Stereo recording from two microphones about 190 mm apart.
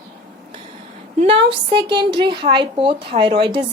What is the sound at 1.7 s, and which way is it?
A woman's voice, 25° right (ahead or behind).